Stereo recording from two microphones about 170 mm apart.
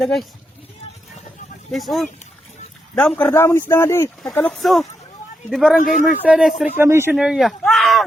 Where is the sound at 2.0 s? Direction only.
40° left (ahead or behind).